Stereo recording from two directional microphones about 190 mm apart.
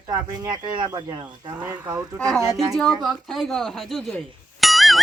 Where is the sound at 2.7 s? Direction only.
Centre (ahead or behind).